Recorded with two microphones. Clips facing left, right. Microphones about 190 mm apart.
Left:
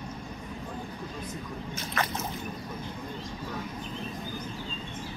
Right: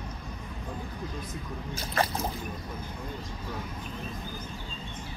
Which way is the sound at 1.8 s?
35° right (ahead or behind).